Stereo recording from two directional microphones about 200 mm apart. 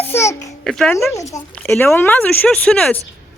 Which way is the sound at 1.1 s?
15° left (ahead or behind).